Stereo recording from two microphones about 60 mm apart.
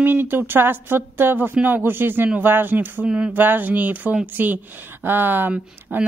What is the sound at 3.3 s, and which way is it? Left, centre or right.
A woman's voice, right.